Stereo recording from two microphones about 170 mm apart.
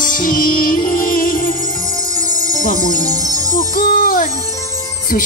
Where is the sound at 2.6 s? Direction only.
50° left (ahead or behind).